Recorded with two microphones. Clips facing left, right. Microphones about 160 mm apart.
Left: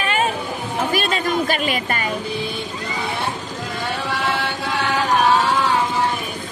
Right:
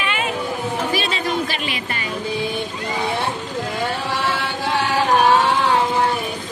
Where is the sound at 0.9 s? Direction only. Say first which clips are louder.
Left 2 dB; 50° left (ahead or behind).